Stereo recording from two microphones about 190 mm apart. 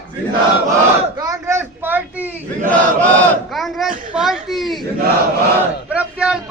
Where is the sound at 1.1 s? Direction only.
20° right (ahead or behind).